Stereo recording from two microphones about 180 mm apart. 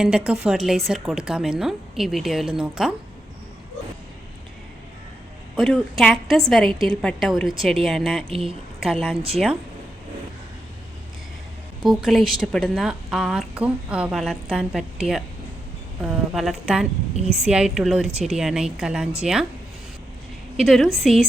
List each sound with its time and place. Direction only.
0.0 s a woman's voice: 5° right (ahead or behind)
5.5 s a woman's voice: centre (ahead or behind)
8.3 s a woman's voice: 30° right (ahead or behind)
8.8 s a woman's voice: centre (ahead or behind)
11.8 s a woman's voice: centre (ahead or behind)
16.3 s a woman's voice: centre (ahead or behind)
20.6 s a woman's voice: centre (ahead or behind)